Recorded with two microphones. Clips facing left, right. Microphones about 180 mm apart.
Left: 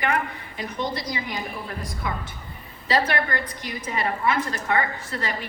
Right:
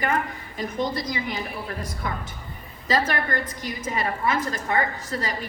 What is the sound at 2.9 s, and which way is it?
A woman's voice, 45° right (ahead or behind).